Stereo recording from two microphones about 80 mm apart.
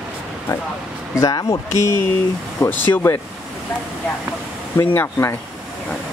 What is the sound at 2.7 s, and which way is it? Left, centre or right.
Speech, left.